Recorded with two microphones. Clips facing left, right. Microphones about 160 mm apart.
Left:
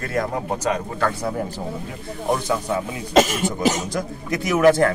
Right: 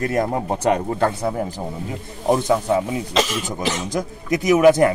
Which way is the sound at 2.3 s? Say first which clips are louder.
Right 5 dB; 25° right (ahead or behind).